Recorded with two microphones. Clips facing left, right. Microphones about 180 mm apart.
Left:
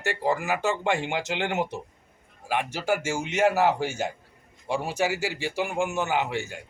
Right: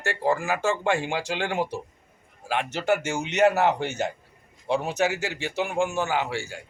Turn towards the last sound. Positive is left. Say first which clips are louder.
# even
turn(degrees=20)  # may be behind; listen again after turning